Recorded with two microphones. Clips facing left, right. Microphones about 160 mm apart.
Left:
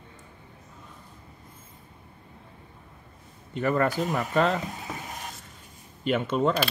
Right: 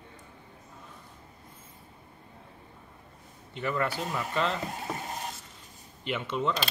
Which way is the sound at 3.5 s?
45° left (ahead or behind).